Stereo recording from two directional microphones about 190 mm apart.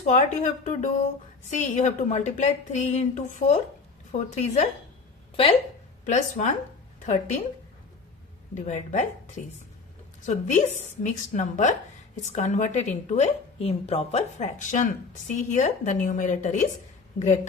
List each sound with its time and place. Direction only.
0.0 s a woman's voice: 40° left (ahead or behind)
6.1 s a woman's voice: 40° left (ahead or behind)
8.5 s a woman's voice: 40° left (ahead or behind)